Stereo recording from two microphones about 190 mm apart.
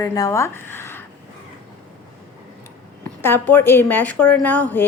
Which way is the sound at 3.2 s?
10° left (ahead or behind).